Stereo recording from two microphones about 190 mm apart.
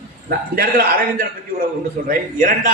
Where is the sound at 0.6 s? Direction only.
50° right (ahead or behind).